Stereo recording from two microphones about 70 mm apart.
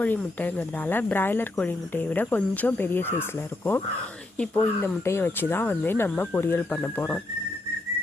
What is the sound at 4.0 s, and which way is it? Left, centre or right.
Speech, centre.